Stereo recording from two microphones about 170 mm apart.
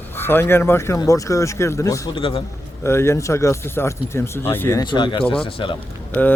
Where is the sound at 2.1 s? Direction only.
30° left (ahead or behind).